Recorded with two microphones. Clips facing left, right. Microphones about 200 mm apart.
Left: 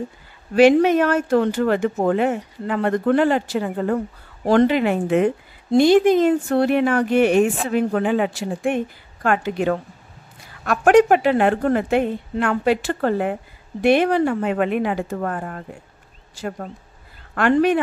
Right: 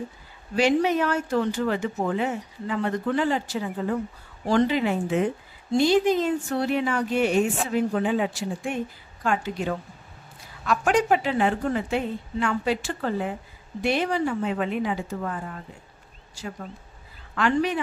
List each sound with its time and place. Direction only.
0.6 s a woman's voice: 60° left (ahead or behind)